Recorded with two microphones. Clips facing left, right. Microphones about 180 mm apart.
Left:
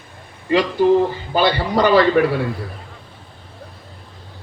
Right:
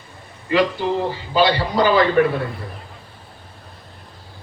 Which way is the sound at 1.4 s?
60° left (ahead or behind).